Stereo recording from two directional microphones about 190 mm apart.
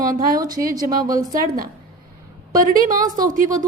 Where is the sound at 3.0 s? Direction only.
20° right (ahead or behind).